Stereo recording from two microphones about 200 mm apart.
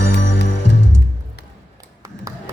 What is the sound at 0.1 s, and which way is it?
Music, 60° left (ahead or behind).